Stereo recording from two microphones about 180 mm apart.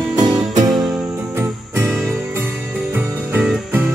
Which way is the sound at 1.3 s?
15° right (ahead or behind).